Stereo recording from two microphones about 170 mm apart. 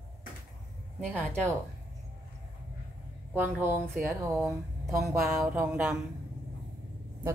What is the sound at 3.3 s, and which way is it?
A woman's voice, 15° right (ahead or behind).